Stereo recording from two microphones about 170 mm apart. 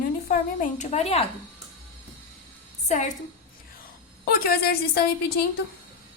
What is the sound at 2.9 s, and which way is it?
Speech, 45° left (ahead or behind).